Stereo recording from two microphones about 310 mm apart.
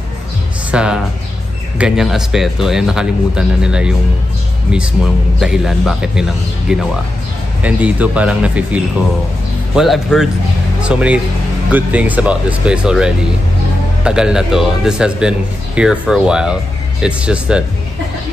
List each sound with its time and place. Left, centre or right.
0.7 s speech: centre
5.4 s speech: centre